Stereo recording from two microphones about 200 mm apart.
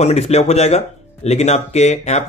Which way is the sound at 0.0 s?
35° left (ahead or behind).